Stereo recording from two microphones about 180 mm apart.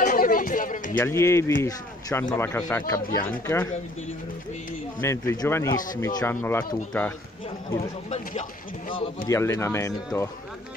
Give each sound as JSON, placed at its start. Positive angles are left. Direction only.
{"t": 0.0, "sound": "a sound", "side_deg": 50}
{"t": 1.0, "sound": "speech", "side_deg": 15}
{"t": 5.0, "sound": "speech", "side_deg": 15}
{"t": 7.7, "sound": "speech", "side_deg": 40}
{"t": 9.3, "sound": "speech", "side_deg": 15}